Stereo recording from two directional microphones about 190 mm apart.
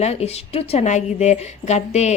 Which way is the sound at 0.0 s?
35° left (ahead or behind).